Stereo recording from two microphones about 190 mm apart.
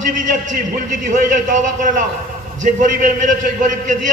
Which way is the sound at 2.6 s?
45° right (ahead or behind).